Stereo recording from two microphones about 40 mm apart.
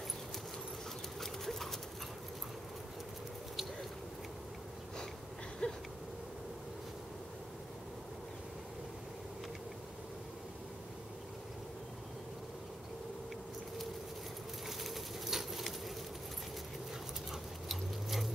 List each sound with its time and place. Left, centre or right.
1.2 s dog: centre
5.6 s a sound: left
14.7 s bird: centre
17.3 s dog: centre